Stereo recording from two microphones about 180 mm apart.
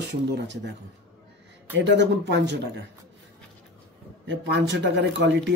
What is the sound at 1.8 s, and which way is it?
Speech, 75° right (ahead or behind).